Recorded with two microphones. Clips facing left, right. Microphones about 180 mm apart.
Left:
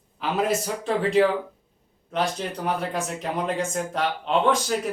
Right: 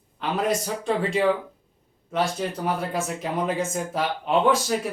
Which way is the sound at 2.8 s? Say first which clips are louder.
Right 1 dB; 5° right (ahead or behind).